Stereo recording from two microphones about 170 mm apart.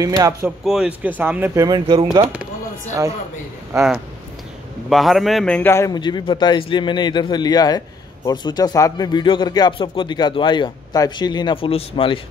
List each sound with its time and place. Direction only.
0.0 s speech: 20° right (ahead or behind)
0.7 s speech: 5° right (ahead or behind)
1.6 s speech: 25° right (ahead or behind)
4.8 s speech: centre (ahead or behind); by 12.2 s 30° left (ahead or behind)